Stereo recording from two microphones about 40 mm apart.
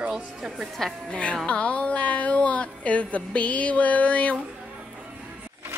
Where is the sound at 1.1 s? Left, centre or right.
Left.